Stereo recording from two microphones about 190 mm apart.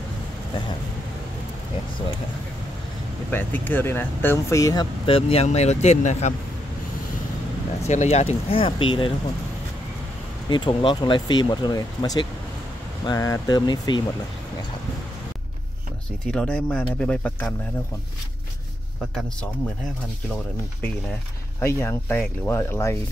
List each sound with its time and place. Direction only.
3.3 s speech: 10° left (ahead or behind); by 6.3 s 35° left (ahead or behind)
7.8 s speech: 35° left (ahead or behind)
10.5 s speech: 25° left (ahead or behind)
16.3 s speech: 5° left (ahead or behind)
21.5 s speech: 15° left (ahead or behind)